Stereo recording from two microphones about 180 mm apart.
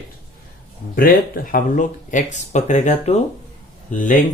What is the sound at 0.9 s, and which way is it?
Speech, 50° left (ahead or behind).